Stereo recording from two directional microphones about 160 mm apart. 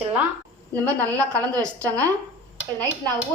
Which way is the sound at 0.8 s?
10° left (ahead or behind).